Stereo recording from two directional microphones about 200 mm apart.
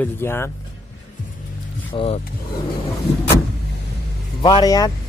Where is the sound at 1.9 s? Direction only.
25° left (ahead or behind).